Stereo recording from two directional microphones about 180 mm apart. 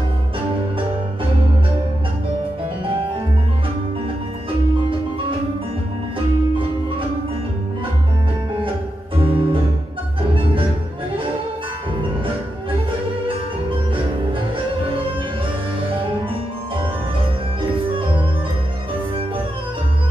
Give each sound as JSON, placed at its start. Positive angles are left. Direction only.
{"t": 9.1, "sound": "music", "side_deg": -30}